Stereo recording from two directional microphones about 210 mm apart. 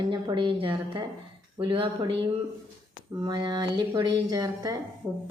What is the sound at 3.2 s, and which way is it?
A woman's voice, 20° right (ahead or behind).